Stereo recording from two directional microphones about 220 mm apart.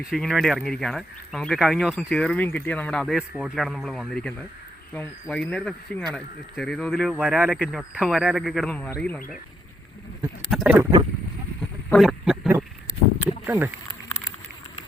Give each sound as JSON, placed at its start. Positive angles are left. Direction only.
{"t": 0.1, "sound": "speech", "side_deg": 0}
{"t": 10.5, "sound": "speech", "side_deg": -5}
{"t": 11.9, "sound": "a sound", "side_deg": 0}
{"t": 13.4, "sound": "speech", "side_deg": -10}